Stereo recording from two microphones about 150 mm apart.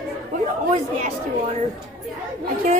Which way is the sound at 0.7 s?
50° right (ahead or behind).